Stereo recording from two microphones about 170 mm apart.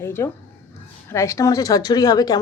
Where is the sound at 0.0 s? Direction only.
15° left (ahead or behind).